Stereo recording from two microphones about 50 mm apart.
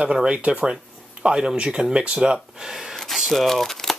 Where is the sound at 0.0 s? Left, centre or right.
Centre.